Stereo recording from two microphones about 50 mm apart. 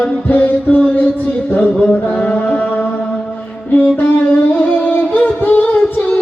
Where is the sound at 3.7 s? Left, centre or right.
Left.